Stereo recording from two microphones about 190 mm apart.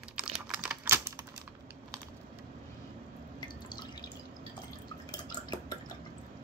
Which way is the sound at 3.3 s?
20° left (ahead or behind).